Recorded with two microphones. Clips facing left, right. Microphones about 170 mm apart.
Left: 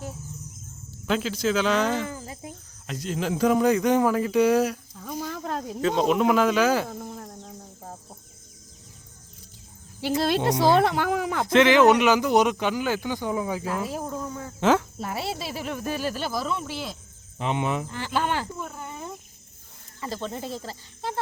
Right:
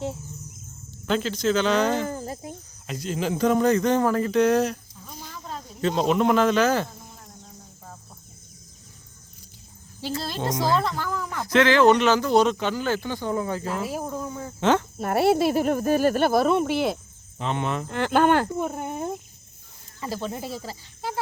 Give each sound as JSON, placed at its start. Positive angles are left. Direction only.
{"t": 1.0, "sound": "speech", "side_deg": 5}
{"t": 2.0, "sound": "speech", "side_deg": -45}
{"t": 2.8, "sound": "speech", "side_deg": 0}
{"t": 4.9, "sound": "a sound", "side_deg": 65}
{"t": 5.8, "sound": "speech", "side_deg": 0}
{"t": 6.8, "sound": "cricket", "side_deg": 60}
{"t": 10.2, "sound": "speech", "side_deg": 70}
{"t": 11.4, "sound": "speech", "side_deg": 20}
{"t": 13.8, "sound": "speech", "side_deg": -5}
{"t": 14.6, "sound": "speech", "side_deg": 5}
{"t": 14.9, "sound": "speech", "side_deg": -55}
{"t": 17.4, "sound": "speech", "side_deg": 15}
{"t": 17.8, "sound": "speech", "side_deg": -60}
{"t": 20.0, "sound": "speech", "side_deg": -10}